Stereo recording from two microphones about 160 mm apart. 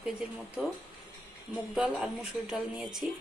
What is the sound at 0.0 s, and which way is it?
Speech, 5° right (ahead or behind).